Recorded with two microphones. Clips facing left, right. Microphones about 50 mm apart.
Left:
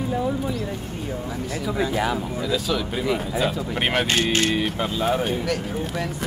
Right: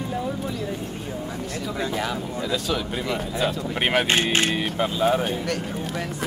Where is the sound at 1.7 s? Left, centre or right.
Centre.